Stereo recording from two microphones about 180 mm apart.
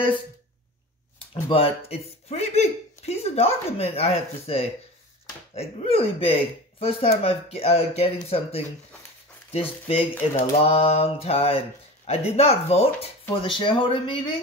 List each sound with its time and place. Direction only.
1.3 s speech: 30° left (ahead or behind)
10.1 s speech: 10° left (ahead or behind)
10.6 s speech: 35° left (ahead or behind)